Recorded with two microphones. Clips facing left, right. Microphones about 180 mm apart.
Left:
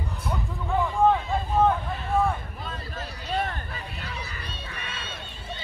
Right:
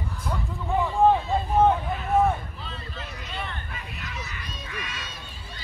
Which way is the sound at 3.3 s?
40° left (ahead or behind).